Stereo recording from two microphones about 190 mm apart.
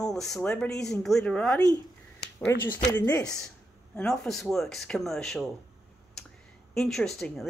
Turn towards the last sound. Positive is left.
turn(degrees=5)  # may be behind; listen again after turning